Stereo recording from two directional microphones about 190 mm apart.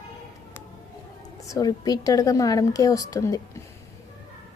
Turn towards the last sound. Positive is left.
turn(degrees=15)  # may be behind; listen again after turning